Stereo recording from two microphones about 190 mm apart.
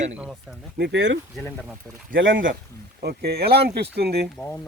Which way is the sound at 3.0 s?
55° right (ahead or behind).